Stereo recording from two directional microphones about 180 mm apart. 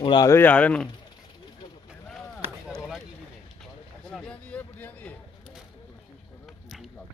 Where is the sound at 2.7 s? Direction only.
Centre (ahead or behind).